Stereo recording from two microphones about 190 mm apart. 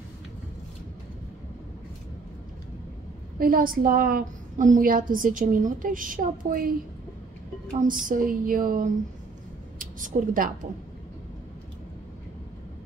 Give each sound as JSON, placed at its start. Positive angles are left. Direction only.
{"t": 3.3, "sound": "a woman's voice", "side_deg": -50}
{"t": 7.8, "sound": "a woman's voice", "side_deg": -45}